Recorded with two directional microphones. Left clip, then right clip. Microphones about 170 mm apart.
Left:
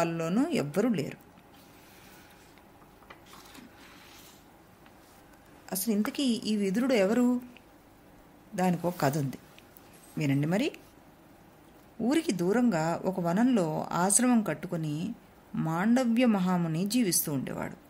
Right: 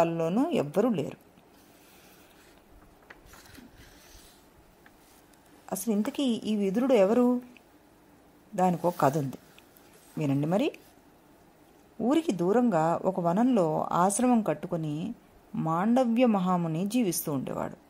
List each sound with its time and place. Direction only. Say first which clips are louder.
0.0 s a woman's voice: right 3 dB; 25° right (ahead or behind)
5.7 s a woman's voice: right 1 dB; 30° right (ahead or behind)
8.5 s a woman's voice: right 4 dB; 25° right (ahead or behind)
12.0 s a woman's voice: right 2 dB; 25° right (ahead or behind)